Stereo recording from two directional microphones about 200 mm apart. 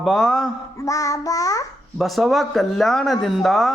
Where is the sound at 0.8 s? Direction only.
15° left (ahead or behind).